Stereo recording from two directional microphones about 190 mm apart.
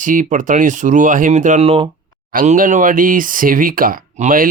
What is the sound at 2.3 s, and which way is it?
Speech, 45° right (ahead or behind).